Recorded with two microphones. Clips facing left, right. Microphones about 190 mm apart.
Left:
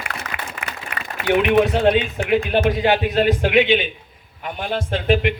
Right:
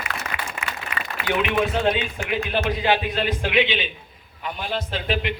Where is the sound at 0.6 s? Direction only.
55° left (ahead or behind).